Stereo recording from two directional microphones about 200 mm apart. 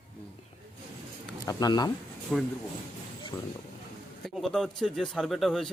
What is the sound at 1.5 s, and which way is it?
Speech, 20° left (ahead or behind).